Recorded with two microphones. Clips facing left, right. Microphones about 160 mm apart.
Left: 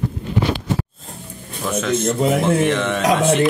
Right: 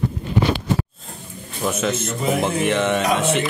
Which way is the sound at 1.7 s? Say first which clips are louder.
Left 3 dB; 5° right (ahead or behind).